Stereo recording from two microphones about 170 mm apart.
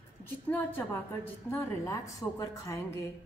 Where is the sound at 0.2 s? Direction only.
10° left (ahead or behind).